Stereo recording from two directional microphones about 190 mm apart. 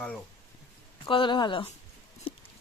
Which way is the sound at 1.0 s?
25° left (ahead or behind).